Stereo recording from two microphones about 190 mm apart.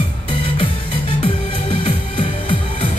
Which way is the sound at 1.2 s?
25° left (ahead or behind).